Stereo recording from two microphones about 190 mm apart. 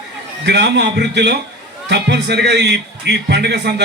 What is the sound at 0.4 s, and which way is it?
A man's voice, 65° right (ahead or behind).